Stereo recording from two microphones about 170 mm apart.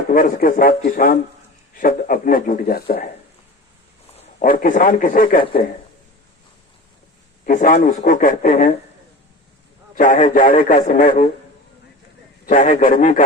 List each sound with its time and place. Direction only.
0.1 s a man's voice: 55° left (ahead or behind)
4.2 s speech: 50° left (ahead or behind)
7.4 s speech: 55° left (ahead or behind)
10.0 s a man's voice: 50° left (ahead or behind)
12.5 s speech: 50° left (ahead or behind)